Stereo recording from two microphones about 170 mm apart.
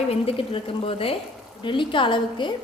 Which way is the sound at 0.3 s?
30° left (ahead or behind).